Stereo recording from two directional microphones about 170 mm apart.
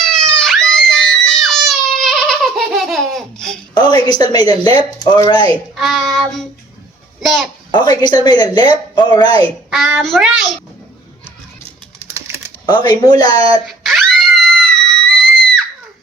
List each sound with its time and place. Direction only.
0.0 s a sound: 5° left (ahead or behind)
3.8 s a woman's voice: 25° left (ahead or behind)
5.7 s child singing: centre (ahead or behind)
7.7 s a woman's voice: 25° left (ahead or behind)
9.6 s child singing: 5° right (ahead or behind)
11.9 s typing: 15° right (ahead or behind)
12.6 s a woman's voice: 25° left (ahead or behind)
13.7 s screaming: centre (ahead or behind)